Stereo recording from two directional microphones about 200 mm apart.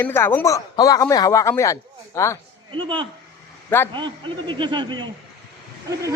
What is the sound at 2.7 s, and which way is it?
Speech, 25° right (ahead or behind).